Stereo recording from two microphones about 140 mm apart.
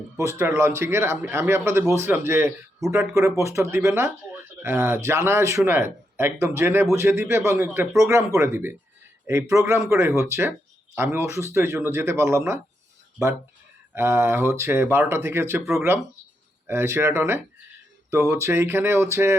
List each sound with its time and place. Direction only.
0.2 s speech: 20° right (ahead or behind)
13.9 s speech: 20° right (ahead or behind)
16.6 s speech: 15° right (ahead or behind)